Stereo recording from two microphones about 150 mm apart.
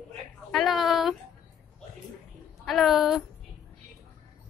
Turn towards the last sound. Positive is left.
turn(degrees=0)  # may be behind; listen again after turning